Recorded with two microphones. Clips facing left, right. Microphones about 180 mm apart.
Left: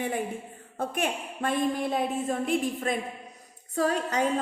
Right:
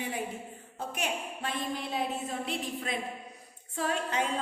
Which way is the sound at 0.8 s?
50° left (ahead or behind).